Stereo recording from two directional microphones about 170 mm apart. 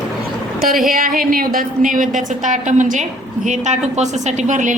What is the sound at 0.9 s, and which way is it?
A woman's voice, 60° right (ahead or behind).